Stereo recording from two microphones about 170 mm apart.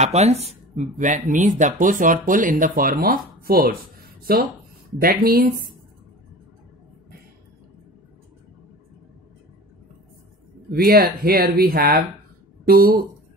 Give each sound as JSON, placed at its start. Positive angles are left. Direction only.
{"t": 0.0, "sound": "speech", "side_deg": -40}
{"t": 10.7, "sound": "speech", "side_deg": -60}